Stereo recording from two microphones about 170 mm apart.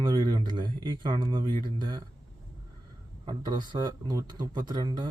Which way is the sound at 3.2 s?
25° right (ahead or behind).